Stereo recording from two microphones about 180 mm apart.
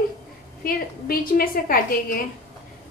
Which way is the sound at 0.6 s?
55° left (ahead or behind).